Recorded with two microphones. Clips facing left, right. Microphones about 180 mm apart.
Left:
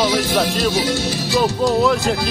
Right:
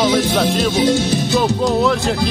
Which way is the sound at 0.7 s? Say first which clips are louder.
Right 5 dB; 20° right (ahead or behind).